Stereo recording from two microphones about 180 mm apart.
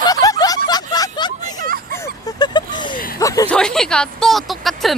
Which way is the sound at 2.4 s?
20° left (ahead or behind).